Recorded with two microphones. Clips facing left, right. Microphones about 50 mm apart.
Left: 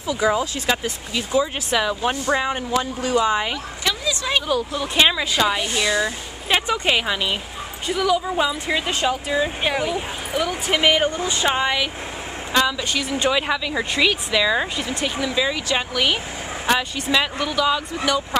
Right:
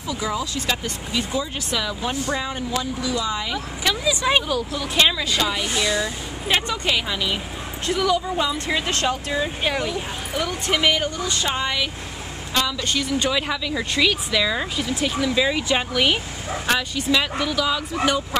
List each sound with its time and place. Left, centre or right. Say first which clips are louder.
0.1 s speech: left 5 dB; left
1.1 s speech: left 4 dB; centre
1.7 s speech: left 4 dB; left
3.8 s vehicle: right 3 dB; centre
4.5 s speech: left 2 dB; centre
7.8 s speech: left 1 dB; centre
13.2 s speech: left 3 dB; centre
15.4 s speech: right 1 dB; centre
16.6 s speech: left 1 dB; centre
18.3 s speech: left 5 dB; centre